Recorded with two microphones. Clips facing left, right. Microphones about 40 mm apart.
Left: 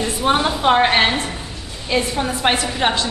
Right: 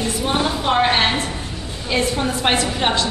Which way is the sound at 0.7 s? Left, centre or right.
Centre.